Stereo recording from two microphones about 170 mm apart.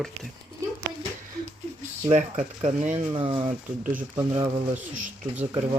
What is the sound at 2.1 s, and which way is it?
Speech, 45° right (ahead or behind).